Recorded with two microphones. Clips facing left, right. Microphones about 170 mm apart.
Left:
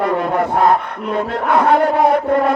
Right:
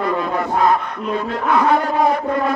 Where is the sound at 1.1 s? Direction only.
65° left (ahead or behind).